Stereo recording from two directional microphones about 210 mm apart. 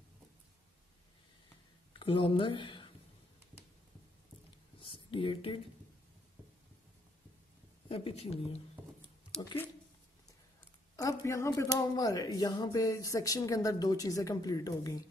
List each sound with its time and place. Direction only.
2.0 s speech: 25° left (ahead or behind)
4.7 s a sound: 25° left (ahead or behind)
7.9 s speech: 25° left (ahead or behind)
9.4 s speech: 15° left (ahead or behind)
11.0 s speech: 15° left (ahead or behind)